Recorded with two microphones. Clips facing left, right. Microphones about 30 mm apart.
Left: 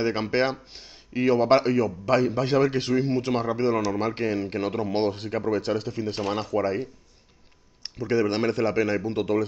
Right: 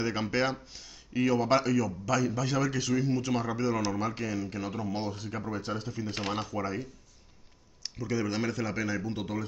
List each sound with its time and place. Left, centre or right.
0.0 s speech: left